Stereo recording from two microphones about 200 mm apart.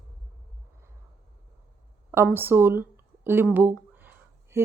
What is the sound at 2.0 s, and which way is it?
A woman's voice, 10° right (ahead or behind).